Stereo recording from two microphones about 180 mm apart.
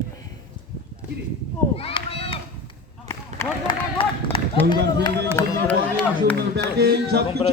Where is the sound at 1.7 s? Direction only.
30° left (ahead or behind).